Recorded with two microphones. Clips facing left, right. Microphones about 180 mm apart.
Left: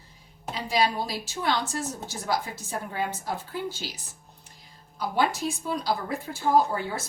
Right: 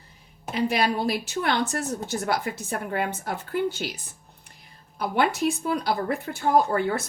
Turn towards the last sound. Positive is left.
turn(degrees=-60)  # may be behind; listen again after turning